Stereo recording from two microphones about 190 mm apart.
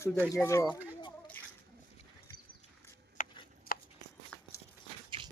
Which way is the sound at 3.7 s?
50° left (ahead or behind).